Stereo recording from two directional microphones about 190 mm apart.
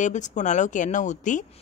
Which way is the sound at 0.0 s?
40° left (ahead or behind).